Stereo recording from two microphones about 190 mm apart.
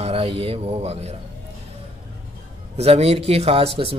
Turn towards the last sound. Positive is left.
turn(degrees=-30)  # may be behind; listen again after turning